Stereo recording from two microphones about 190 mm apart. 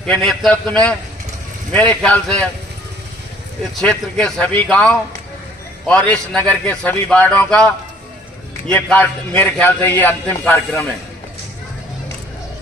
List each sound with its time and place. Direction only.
0.0 s a man's voice: 5° left (ahead or behind)
3.8 s a man's voice: 5° left (ahead or behind)